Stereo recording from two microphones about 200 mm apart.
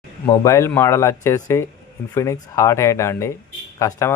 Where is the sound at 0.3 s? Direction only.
15° left (ahead or behind).